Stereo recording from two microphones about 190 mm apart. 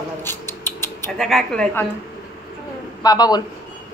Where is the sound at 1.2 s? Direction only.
Centre (ahead or behind).